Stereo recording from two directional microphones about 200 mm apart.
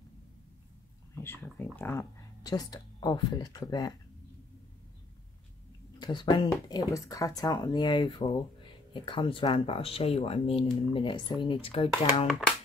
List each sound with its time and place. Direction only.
1.1 s speech: 10° left (ahead or behind)
5.9 s speech: 20° left (ahead or behind)